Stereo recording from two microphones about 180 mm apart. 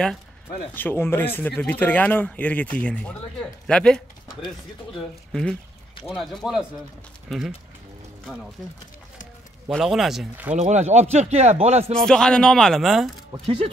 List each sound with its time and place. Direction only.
0.7 s speech: 10° left (ahead or behind)
5.3 s speech: 5° left (ahead or behind)
9.7 s speech: centre (ahead or behind)
10.5 s speech: 40° right (ahead or behind)
12.1 s speech: 5° left (ahead or behind)